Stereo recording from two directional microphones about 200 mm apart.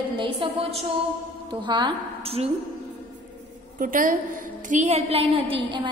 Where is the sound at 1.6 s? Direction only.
25° right (ahead or behind).